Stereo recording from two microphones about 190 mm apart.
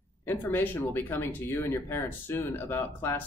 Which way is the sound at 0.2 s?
10° left (ahead or behind).